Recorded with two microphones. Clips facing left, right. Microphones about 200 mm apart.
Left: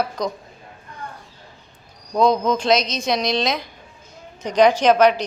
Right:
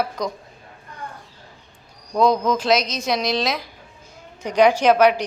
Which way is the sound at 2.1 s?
Centre (ahead or behind).